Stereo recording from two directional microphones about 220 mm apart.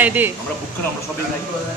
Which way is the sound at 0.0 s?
10° right (ahead or behind).